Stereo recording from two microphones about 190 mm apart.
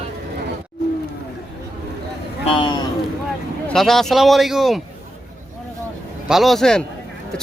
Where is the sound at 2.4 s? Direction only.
25° left (ahead or behind).